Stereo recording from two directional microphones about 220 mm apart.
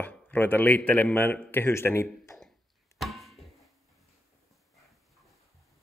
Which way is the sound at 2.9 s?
Centre (ahead or behind).